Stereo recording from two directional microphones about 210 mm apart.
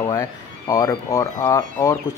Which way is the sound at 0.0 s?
15° left (ahead or behind).